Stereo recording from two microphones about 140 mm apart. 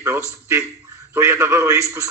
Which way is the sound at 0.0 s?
15° right (ahead or behind).